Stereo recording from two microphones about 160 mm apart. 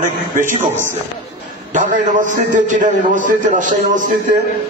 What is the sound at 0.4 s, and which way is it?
Speech, 50° right (ahead or behind).